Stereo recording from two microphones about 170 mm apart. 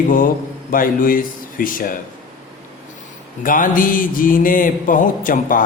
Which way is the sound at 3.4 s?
55° left (ahead or behind).